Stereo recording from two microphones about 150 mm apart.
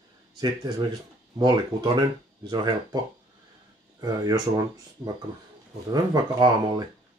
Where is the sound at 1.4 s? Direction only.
30° right (ahead or behind).